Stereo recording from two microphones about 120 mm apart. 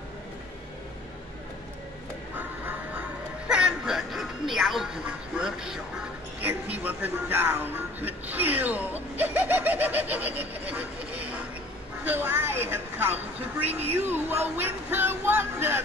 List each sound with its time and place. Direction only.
2.3 s music: 15° right (ahead or behind)
6.4 s music: 15° right (ahead or behind)
12.0 s a sound: 15° right (ahead or behind)
13.9 s music: 15° right (ahead or behind)